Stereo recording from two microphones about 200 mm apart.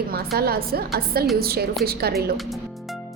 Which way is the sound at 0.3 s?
50° right (ahead or behind).